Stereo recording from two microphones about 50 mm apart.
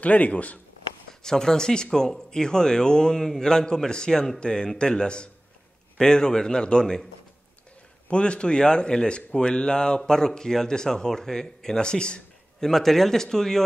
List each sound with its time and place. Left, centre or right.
0.0 s speech: left
1.2 s speech: centre
8.1 s speech: left